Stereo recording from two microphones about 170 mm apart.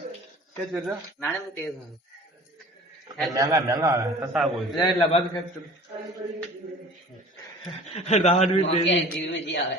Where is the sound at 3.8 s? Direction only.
20° right (ahead or behind).